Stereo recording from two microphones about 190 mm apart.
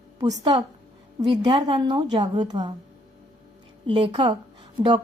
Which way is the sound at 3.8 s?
25° right (ahead or behind).